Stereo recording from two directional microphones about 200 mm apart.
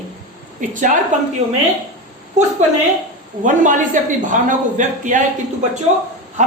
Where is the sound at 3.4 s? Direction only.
40° right (ahead or behind).